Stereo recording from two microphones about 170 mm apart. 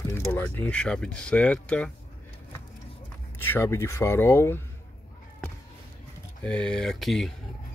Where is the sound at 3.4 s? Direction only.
15° left (ahead or behind).